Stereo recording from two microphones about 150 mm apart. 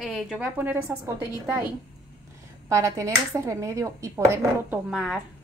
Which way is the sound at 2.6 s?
20° right (ahead or behind).